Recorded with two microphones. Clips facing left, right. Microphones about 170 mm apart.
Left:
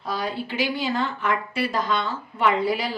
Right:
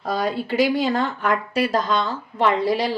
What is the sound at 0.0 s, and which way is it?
Speech, 50° right (ahead or behind).